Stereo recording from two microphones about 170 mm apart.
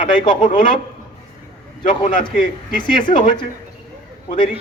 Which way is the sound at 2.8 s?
25° left (ahead or behind).